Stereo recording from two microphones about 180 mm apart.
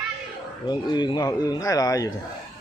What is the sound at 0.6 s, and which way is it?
Speech, 25° left (ahead or behind).